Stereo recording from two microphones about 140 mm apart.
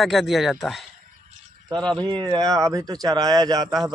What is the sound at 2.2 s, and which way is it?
A man's voice, 25° right (ahead or behind).